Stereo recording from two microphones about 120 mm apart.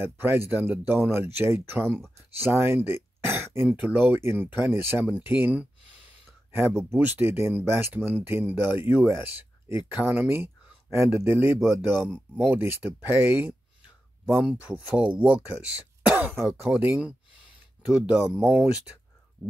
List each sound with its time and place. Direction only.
0.0 s speech: 20° right (ahead or behind)
6.9 s speech: 20° right (ahead or behind)
16.1 s throat clearing: 15° right (ahead or behind)
16.7 s speech: 20° right (ahead or behind)
18.0 s speech: 5° right (ahead or behind)